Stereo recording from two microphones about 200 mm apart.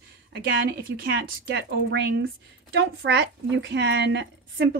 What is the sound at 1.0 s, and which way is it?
Speech, 65° right (ahead or behind).